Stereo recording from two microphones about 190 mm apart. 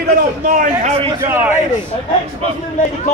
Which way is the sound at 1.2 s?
15° right (ahead or behind).